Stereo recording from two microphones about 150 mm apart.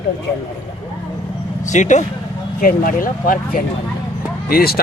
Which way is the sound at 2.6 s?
70° left (ahead or behind).